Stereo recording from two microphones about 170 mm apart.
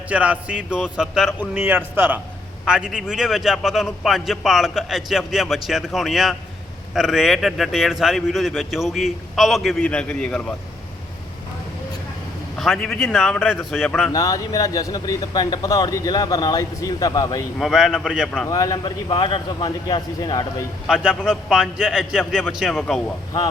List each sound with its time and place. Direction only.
0.1 s a man's voice: 5° right (ahead or behind)
12.5 s a man's voice: centre (ahead or behind)
14.1 s speech: 20° left (ahead or behind)
17.6 s a man's voice: centre (ahead or behind)
18.4 s speech: 20° left (ahead or behind)
20.8 s a man's voice: 5° right (ahead or behind)